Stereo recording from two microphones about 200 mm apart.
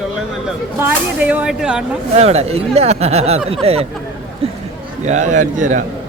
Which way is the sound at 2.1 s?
30° right (ahead or behind).